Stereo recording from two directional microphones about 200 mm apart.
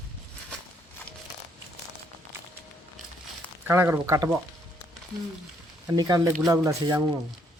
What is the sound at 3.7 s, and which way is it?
Speech, 10° right (ahead or behind).